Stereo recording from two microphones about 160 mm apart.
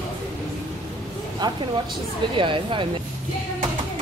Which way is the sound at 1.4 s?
25° right (ahead or behind).